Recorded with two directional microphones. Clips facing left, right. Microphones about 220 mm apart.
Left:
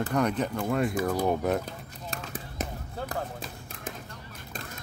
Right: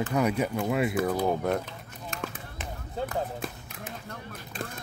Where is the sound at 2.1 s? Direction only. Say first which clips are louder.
Left 2 dB; 35° left (ahead or behind).